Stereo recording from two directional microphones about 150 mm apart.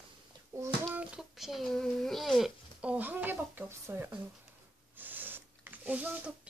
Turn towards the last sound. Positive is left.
turn(degrees=-10)  # may be behind; listen again after turning